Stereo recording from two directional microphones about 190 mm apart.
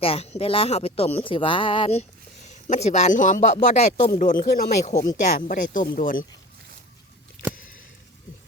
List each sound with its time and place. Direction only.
0.0 s speech: 30° left (ahead or behind)